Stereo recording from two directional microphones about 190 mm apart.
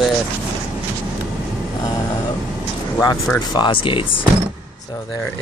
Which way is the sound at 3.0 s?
15° left (ahead or behind).